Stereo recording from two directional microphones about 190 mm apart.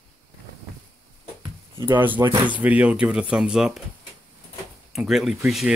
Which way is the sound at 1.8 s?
10° right (ahead or behind).